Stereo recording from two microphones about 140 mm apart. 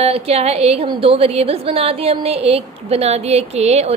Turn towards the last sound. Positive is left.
turn(degrees=-50)  # may be behind; listen again after turning